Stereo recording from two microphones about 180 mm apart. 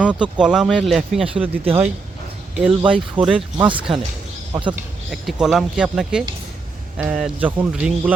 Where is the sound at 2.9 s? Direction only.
5° right (ahead or behind).